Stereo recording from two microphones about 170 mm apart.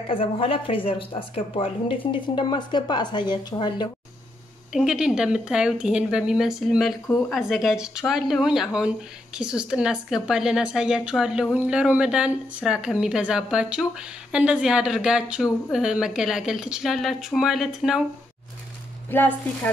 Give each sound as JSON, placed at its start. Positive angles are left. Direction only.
{"t": 0.1, "sound": "a woman's voice", "side_deg": 30}
{"t": 4.7, "sound": "speech", "side_deg": -5}
{"t": 19.0, "sound": "a woman's voice", "side_deg": 10}